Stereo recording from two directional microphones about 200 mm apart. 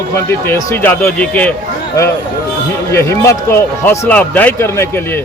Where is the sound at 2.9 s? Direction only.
15° left (ahead or behind).